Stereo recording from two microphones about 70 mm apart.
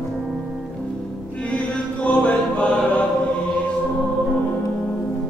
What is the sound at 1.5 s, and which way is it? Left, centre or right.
Chant, centre.